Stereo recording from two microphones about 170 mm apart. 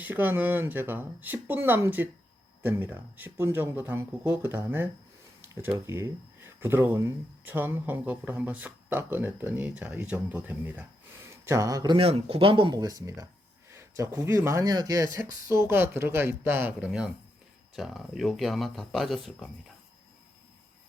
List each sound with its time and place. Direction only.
0.0 s speech: 10° right (ahead or behind)